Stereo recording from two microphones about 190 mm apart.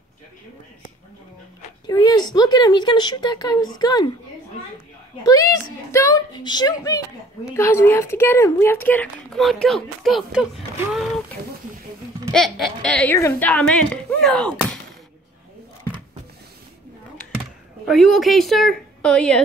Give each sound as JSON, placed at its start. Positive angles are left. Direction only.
{"t": 1.9, "sound": "speech", "side_deg": 20}
{"t": 5.2, "sound": "a woman's voice", "side_deg": 15}
{"t": 12.3, "sound": "speech", "side_deg": 0}
{"t": 17.4, "sound": "speech", "side_deg": 0}